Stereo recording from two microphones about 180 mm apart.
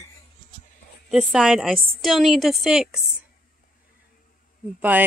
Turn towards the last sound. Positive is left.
turn(degrees=-10)  # may be behind; listen again after turning